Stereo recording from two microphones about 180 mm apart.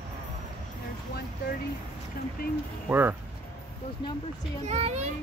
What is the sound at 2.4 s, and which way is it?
Speech, 55° left (ahead or behind).